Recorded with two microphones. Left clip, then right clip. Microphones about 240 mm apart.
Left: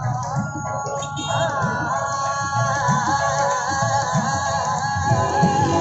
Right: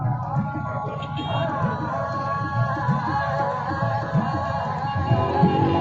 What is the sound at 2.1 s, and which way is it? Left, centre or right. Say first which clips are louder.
Music: left 4 dB; left.